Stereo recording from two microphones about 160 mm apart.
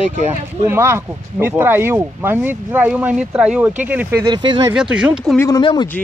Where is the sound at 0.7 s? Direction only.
15° right (ahead or behind).